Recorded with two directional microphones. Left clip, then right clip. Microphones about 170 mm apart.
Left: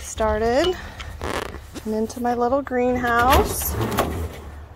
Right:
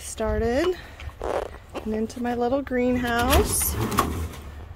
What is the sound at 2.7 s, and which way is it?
Speech, 25° right (ahead or behind).